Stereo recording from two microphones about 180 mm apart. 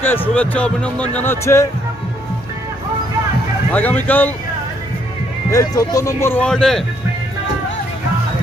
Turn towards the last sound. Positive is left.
turn(degrees=5)  # may be behind; listen again after turning